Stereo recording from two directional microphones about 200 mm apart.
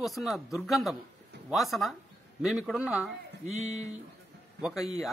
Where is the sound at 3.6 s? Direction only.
35° right (ahead or behind).